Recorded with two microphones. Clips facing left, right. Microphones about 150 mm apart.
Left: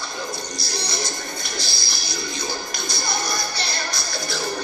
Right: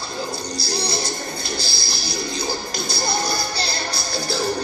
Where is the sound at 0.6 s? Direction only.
30° right (ahead or behind).